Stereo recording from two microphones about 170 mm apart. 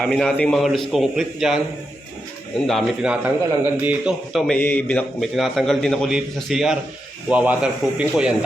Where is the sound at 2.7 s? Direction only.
Centre (ahead or behind).